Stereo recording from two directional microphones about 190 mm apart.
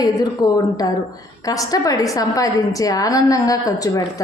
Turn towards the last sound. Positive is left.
turn(degrees=20)  # may be behind; listen again after turning